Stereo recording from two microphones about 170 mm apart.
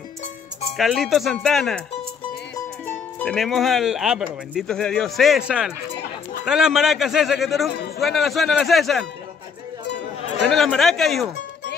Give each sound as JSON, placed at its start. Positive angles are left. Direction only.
{"t": 0.7, "sound": "speech", "side_deg": 0}
{"t": 3.2, "sound": "speech", "side_deg": 5}
{"t": 10.5, "sound": "speech", "side_deg": 0}